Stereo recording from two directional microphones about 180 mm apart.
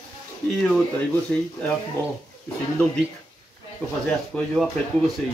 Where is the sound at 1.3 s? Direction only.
10° left (ahead or behind).